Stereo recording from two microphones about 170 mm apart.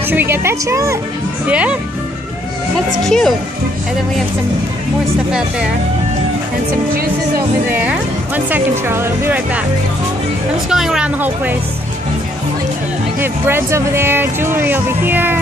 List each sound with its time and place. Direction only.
0.1 s speech: 15° right (ahead or behind)
3.0 s speech: centre (ahead or behind)
6.9 s speech: 60° right (ahead or behind)
8.5 s speech: 10° right (ahead or behind)
10.7 s speech: 5° right (ahead or behind)
13.2 s speech: 15° right (ahead or behind)